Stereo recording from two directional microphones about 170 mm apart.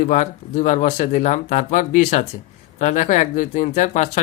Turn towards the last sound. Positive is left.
turn(degrees=45)  # may be behind; listen again after turning